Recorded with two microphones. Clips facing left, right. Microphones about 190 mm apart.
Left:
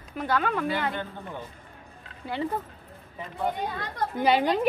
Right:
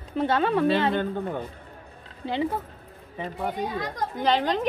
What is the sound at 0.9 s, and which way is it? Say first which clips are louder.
Speech: right 8 dB; 55° right (ahead or behind).